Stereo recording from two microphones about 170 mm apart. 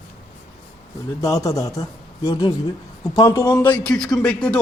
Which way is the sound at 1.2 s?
20° left (ahead or behind).